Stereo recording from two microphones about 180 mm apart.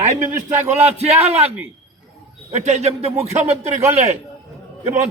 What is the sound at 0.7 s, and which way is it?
A man's voice, 35° right (ahead or behind).